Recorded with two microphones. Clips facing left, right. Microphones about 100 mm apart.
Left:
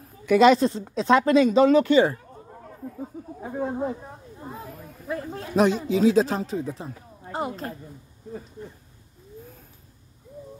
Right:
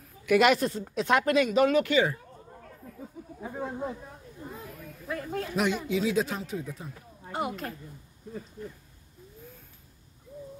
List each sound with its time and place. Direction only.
0.2 s speech: 30° left (ahead or behind)
3.5 s speech: 40° left (ahead or behind)